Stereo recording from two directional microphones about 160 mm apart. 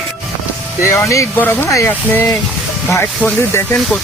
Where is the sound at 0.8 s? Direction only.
20° left (ahead or behind).